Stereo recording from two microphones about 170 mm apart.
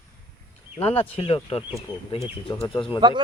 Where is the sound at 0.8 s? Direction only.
35° left (ahead or behind).